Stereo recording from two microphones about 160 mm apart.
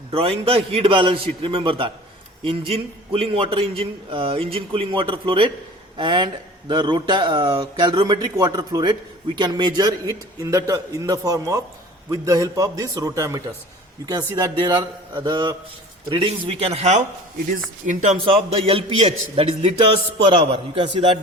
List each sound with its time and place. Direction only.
0.1 s a man's voice: 40° right (ahead or behind)
18.3 s a man's voice: 35° right (ahead or behind)